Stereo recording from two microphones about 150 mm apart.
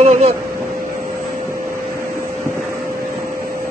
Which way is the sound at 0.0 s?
45° right (ahead or behind).